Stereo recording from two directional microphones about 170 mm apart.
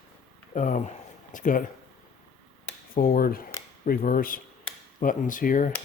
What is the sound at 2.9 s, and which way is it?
A man's voice, 60° left (ahead or behind).